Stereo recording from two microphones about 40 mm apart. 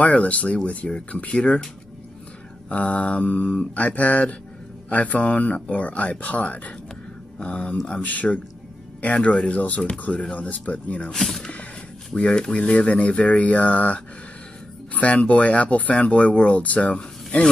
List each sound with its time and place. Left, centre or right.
0.0 s speech: left
2.7 s speech: left
8.0 s speech: left
11.1 s speech: centre
12.2 s speech: left
12.5 s speech: left